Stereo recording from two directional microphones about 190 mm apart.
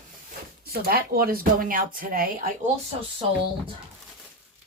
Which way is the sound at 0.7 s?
55° right (ahead or behind).